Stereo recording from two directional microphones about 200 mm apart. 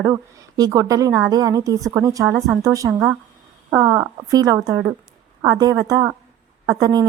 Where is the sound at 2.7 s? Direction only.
15° right (ahead or behind).